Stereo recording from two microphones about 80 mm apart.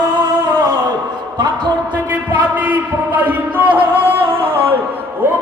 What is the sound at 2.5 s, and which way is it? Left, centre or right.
Music, right.